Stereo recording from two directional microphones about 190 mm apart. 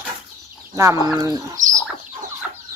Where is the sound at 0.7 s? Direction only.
15° right (ahead or behind).